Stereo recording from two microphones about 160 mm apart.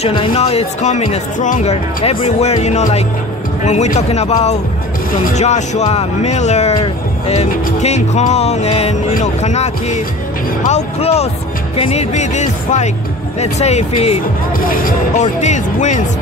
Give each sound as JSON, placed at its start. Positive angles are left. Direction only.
{"t": 0.0, "sound": "speech", "side_deg": 35}
{"t": 14.6, "sound": "speech", "side_deg": 60}